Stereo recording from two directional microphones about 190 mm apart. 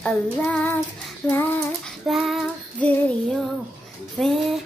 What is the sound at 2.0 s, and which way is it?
Female singing, centre (ahead or behind).